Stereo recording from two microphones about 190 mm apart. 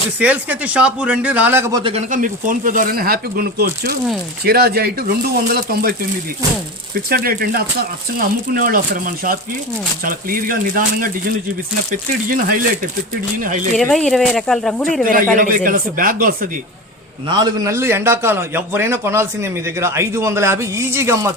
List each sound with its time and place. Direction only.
0.2 s a man's voice: 10° right (ahead or behind)
1.8 s speech: 30° right (ahead or behind); by 5.9 s 50° right (ahead or behind)
6.9 s speech: 50° right (ahead or behind)
13.7 s speech: centre (ahead or behind)
15.0 s speech: 45° right (ahead or behind)
17.2 s a man's voice: 20° right (ahead or behind)